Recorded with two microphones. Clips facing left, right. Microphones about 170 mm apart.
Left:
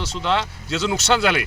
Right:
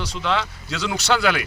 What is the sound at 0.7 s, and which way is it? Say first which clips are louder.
Speech: left 4 dB; 25° left (ahead or behind).